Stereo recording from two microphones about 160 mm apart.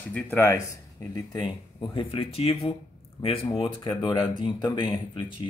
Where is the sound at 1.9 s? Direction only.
35° left (ahead or behind).